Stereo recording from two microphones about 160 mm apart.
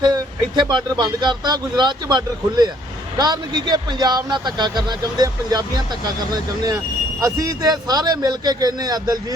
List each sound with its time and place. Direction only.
0.0 s speech: 25° right (ahead or behind)
7.2 s speech: 20° right (ahead or behind)